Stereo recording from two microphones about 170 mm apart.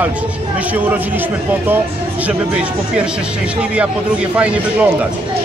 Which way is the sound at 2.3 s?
5° right (ahead or behind).